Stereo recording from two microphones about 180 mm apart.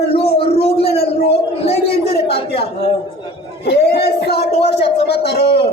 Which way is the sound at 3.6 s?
65° left (ahead or behind).